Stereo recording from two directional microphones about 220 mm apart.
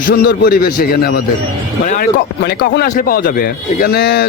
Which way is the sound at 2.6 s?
45° left (ahead or behind).